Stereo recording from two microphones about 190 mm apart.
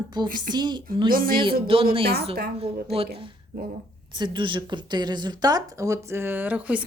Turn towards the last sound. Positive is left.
turn(degrees=-10)  # may be behind; listen again after turning